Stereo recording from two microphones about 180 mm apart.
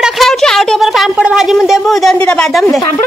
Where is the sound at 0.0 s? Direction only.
Centre (ahead or behind).